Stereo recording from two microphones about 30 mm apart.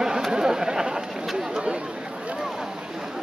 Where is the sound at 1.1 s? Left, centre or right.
Centre.